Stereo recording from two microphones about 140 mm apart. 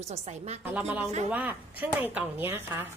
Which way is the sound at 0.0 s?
50° right (ahead or behind).